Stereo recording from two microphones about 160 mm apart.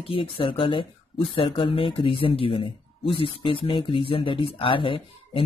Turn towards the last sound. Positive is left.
turn(degrees=35)  # may be behind; listen again after turning